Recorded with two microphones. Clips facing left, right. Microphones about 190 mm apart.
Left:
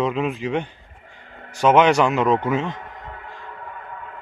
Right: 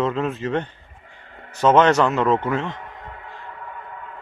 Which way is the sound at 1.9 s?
15° left (ahead or behind).